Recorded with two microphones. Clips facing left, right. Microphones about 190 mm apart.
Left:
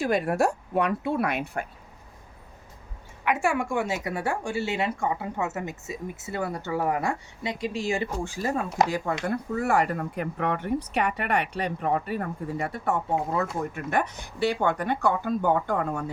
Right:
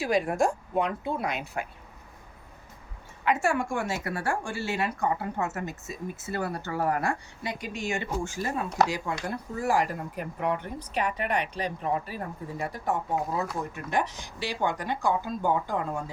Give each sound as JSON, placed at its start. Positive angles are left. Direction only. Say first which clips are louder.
{"t": 0.0, "sound": "speech", "louder": "left 1 dB", "side_deg": 60}
{"t": 3.2, "sound": "speech", "louder": "left 1 dB", "side_deg": 15}
{"t": 8.9, "sound": "speech", "louder": "left 4 dB", "side_deg": 55}
{"t": 13.9, "sound": "speech", "louder": "even", "side_deg": 55}